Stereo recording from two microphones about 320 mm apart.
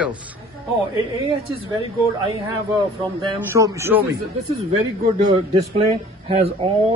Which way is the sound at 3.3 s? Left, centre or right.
Centre.